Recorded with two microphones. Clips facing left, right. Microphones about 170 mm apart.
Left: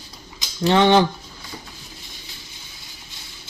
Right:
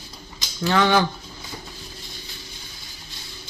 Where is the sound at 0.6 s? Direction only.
25° left (ahead or behind).